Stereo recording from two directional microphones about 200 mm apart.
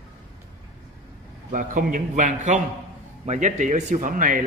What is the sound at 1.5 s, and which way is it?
A man's voice, 45° right (ahead or behind).